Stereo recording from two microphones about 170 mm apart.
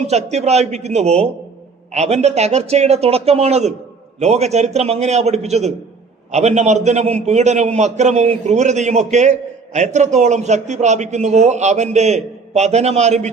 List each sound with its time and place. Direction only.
0.1 s a man's voice: 40° right (ahead or behind)